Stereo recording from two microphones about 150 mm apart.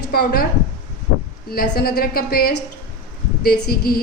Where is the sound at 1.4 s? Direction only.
90° left.